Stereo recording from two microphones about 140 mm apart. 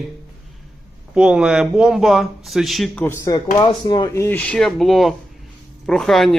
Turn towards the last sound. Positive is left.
turn(degrees=0)  # may be behind; listen again after turning